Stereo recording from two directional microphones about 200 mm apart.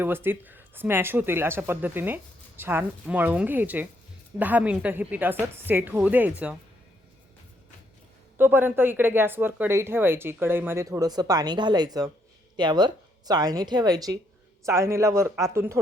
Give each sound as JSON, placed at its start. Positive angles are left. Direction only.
{"t": 0.0, "sound": "speech", "side_deg": -10}
{"t": 8.4, "sound": "a woman's voice", "side_deg": -10}